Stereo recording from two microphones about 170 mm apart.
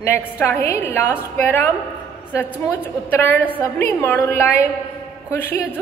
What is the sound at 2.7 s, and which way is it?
A woman's voice, 10° left (ahead or behind).